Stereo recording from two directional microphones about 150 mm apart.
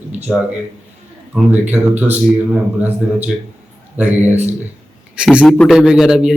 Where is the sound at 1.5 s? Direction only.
10° right (ahead or behind).